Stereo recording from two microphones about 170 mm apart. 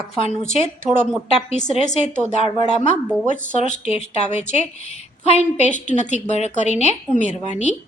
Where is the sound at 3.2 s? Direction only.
45° left (ahead or behind).